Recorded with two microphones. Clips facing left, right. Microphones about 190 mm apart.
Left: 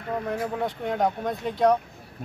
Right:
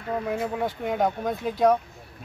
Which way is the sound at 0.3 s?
5° right (ahead or behind).